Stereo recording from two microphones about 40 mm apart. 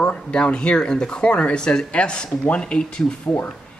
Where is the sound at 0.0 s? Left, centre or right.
Left.